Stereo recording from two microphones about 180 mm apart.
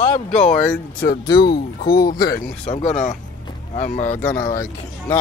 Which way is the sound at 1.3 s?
65° left (ahead or behind).